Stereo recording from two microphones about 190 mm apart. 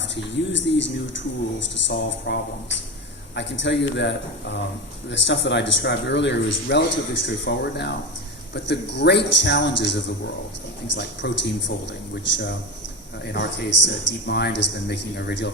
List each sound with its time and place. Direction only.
0.0 s speech: 70° left (ahead or behind)